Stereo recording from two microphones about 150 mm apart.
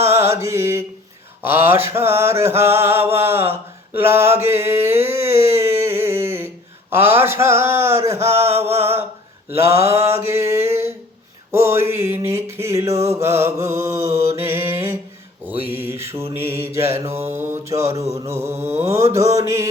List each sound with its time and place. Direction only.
0.1 s mantra: 20° right (ahead or behind)
5.5 s a sound: 15° right (ahead or behind)
6.9 s mantra: 15° right (ahead or behind)